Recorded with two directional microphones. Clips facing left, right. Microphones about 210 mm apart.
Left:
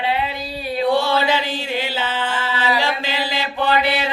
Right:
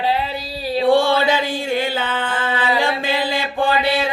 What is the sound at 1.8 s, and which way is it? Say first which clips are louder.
Music: right 2 dB; 50° right (ahead or behind).